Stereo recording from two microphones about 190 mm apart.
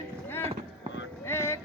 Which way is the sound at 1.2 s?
15° left (ahead or behind).